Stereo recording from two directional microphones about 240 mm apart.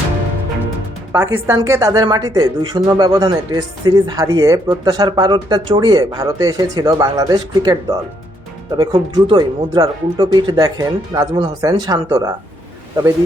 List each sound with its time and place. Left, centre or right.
1.1 s a woman's voice: centre